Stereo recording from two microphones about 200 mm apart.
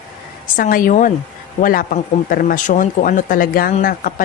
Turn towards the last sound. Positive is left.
turn(degrees=45)  # may be behind; listen again after turning